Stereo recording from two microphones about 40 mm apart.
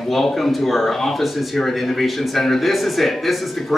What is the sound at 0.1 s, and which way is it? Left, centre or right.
Speech, centre.